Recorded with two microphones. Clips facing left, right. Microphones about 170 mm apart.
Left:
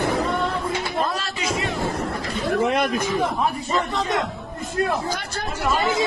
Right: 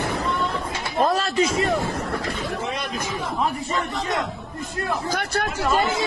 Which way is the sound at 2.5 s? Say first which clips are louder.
Left 7 dB; 60° left (ahead or behind).